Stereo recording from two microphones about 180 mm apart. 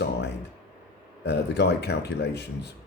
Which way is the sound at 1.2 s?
70° left (ahead or behind).